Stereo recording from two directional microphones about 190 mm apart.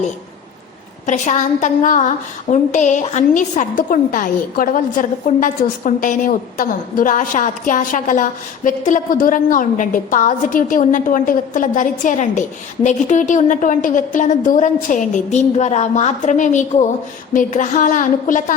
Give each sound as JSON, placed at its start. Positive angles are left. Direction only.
{"t": 1.0, "sound": "a woman's voice", "side_deg": 40}